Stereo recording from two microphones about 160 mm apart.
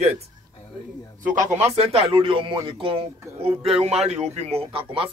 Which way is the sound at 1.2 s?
50° right (ahead or behind).